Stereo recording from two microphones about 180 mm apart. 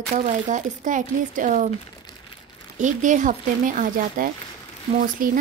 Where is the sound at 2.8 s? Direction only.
45° right (ahead or behind).